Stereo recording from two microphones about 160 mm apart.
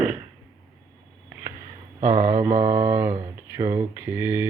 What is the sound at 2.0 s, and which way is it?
Speech, 45° right (ahead or behind).